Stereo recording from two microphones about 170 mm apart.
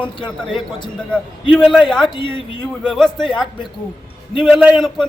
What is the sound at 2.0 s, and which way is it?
Speech, 30° left (ahead or behind).